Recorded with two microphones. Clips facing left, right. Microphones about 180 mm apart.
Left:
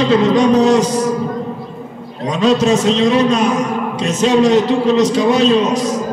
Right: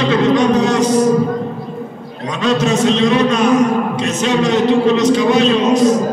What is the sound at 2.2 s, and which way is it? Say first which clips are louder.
A man's voice: left 3 dB; 35° left (ahead or behind).